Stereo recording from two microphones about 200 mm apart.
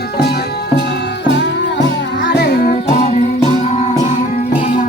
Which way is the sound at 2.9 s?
30° left (ahead or behind).